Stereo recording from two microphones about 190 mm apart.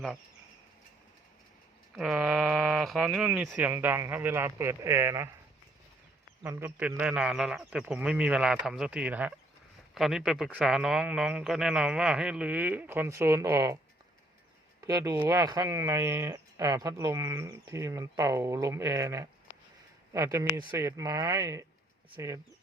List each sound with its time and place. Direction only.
2.0 s speech: centre (ahead or behind)
6.4 s speech: 10° right (ahead or behind)
14.8 s speech: 20° right (ahead or behind)